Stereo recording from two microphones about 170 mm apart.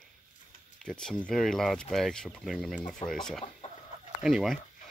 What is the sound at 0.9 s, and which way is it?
Speech, 5° left (ahead or behind).